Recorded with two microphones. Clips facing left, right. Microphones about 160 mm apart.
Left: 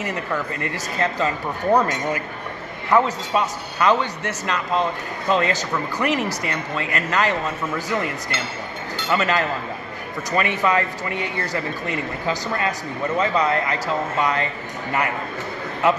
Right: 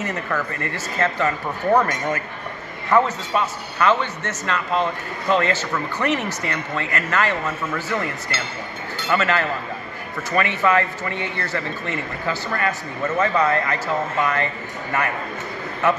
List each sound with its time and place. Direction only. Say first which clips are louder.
0.0 s speech: even; 15° left (ahead or behind)